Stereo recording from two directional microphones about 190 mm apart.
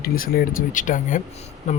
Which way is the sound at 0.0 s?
50° left (ahead or behind).